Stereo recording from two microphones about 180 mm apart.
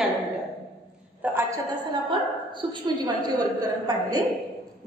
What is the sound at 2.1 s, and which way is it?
A woman's voice, 25° right (ahead or behind).